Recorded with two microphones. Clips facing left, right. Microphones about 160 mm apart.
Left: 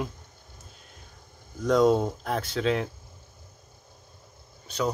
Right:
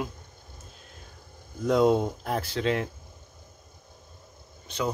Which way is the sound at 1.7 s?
5° right (ahead or behind).